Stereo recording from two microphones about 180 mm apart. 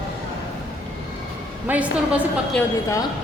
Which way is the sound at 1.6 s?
10° right (ahead or behind).